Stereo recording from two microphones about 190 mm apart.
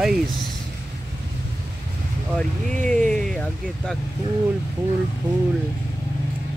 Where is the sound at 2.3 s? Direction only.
5° left (ahead or behind).